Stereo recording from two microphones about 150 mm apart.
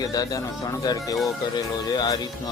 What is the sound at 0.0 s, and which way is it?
Speech, 25° left (ahead or behind).